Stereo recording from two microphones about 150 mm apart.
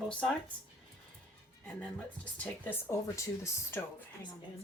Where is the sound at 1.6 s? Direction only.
10° left (ahead or behind).